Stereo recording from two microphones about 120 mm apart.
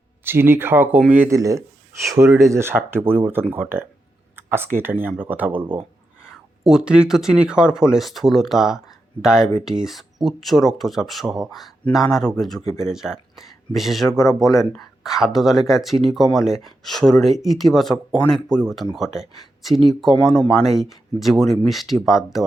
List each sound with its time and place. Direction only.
0.3 s speech: 20° right (ahead or behind)
1.3 s speech: 25° right (ahead or behind)
6.2 s speech: 5° right (ahead or behind)